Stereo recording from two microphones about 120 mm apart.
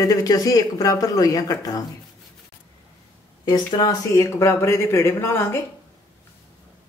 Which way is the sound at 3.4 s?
35° left (ahead or behind).